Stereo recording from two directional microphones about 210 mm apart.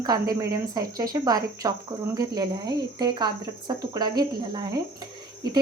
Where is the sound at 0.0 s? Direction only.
20° right (ahead or behind).